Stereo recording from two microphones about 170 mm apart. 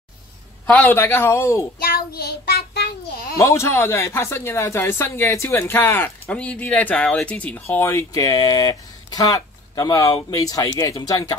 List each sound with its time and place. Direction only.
0.7 s speech: 10° left (ahead or behind)
1.8 s child singing: 60° left (ahead or behind)
3.3 s speech: 15° left (ahead or behind)